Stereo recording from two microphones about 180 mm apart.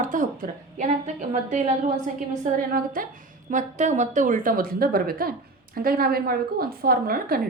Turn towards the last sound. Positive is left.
turn(degrees=-55)  # may be behind; listen again after turning